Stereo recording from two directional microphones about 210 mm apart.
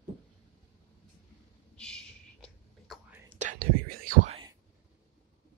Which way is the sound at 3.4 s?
40° right (ahead or behind).